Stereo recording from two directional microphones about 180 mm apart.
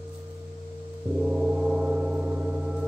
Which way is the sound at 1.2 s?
5° right (ahead or behind).